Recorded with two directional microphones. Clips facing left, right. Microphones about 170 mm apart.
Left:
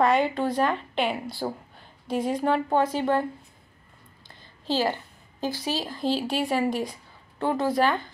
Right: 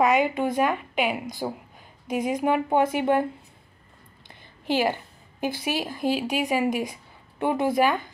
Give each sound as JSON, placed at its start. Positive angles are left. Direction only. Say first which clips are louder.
{"t": 0.0, "sound": "a woman's voice", "louder": "right 1 dB", "side_deg": -10}
{"t": 4.3, "sound": "a sound", "louder": "right 2 dB", "side_deg": -15}
{"t": 5.6, "sound": "a woman's voice", "louder": "right 2 dB", "side_deg": -15}